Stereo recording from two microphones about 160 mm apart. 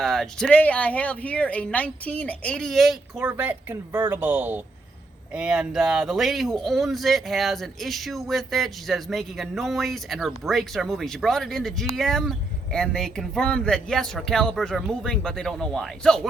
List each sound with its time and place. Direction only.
0.0 s speech: centre (ahead or behind)